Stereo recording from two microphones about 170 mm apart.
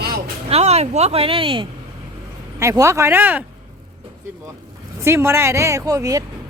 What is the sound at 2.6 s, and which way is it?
Speech, 15° right (ahead or behind).